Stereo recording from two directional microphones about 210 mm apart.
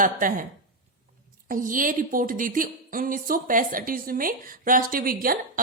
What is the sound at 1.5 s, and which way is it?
Speech, 40° right (ahead or behind).